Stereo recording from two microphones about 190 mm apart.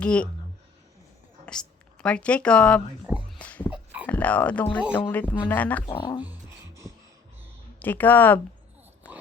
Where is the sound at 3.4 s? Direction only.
5° left (ahead or behind).